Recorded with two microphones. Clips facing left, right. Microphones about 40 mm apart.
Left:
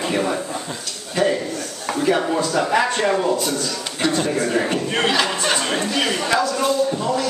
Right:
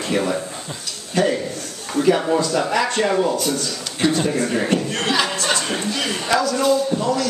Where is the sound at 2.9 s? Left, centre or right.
Centre.